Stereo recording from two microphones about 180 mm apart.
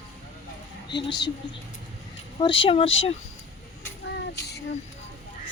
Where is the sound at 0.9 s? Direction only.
25° left (ahead or behind).